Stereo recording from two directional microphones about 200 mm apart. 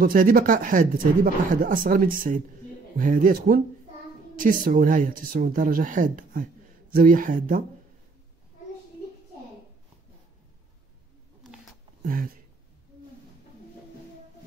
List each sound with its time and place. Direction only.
0.0 s speech: 45° right (ahead or behind)
12.0 s speech: 45° right (ahead or behind)